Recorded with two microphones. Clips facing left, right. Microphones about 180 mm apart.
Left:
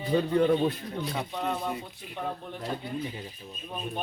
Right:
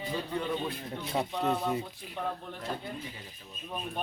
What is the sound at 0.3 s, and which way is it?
Speech, 55° left (ahead or behind).